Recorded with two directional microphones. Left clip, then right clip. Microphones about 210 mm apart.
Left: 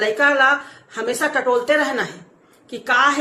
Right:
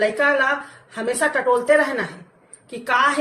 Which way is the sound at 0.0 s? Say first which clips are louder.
Left 3 dB; 15° left (ahead or behind).